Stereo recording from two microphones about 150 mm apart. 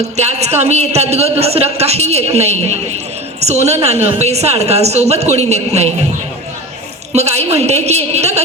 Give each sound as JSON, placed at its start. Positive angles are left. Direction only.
{"t": 0.2, "sound": "a man's voice", "side_deg": -45}
{"t": 7.1, "sound": "a woman's voice", "side_deg": -45}